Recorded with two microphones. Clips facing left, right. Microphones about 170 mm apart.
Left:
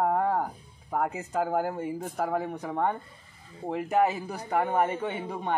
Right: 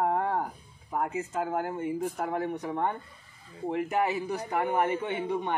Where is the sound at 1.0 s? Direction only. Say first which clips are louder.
Left 2 dB; 35° left (ahead or behind).